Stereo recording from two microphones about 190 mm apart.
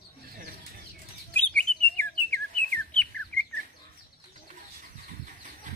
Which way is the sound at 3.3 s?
5° left (ahead or behind).